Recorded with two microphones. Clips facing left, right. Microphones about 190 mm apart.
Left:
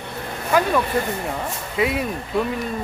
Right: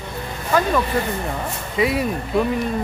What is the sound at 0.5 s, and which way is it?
Speech, 10° left (ahead or behind).